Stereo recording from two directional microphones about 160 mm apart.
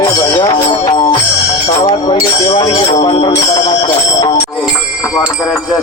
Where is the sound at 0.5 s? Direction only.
30° left (ahead or behind).